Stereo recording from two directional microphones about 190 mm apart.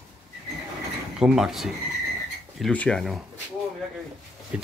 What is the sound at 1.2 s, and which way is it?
Speech, centre (ahead or behind).